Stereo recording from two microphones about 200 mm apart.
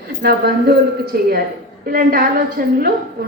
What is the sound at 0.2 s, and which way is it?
A woman's voice, 50° right (ahead or behind).